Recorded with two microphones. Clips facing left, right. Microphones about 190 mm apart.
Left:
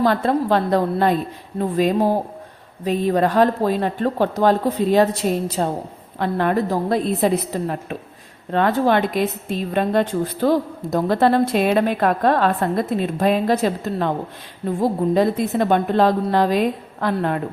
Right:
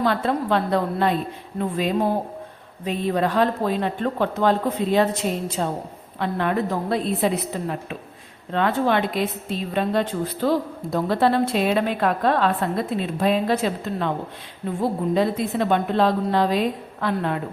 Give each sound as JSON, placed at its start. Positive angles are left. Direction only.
{"t": 0.0, "sound": "a woman's voice", "side_deg": 40}